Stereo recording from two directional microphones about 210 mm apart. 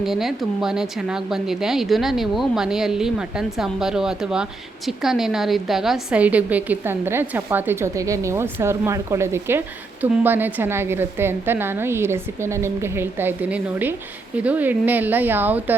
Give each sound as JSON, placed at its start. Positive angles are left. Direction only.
{"t": 0.0, "sound": "a woman's voice", "side_deg": 0}